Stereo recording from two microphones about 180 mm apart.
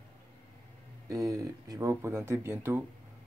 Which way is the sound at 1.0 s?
20° right (ahead or behind).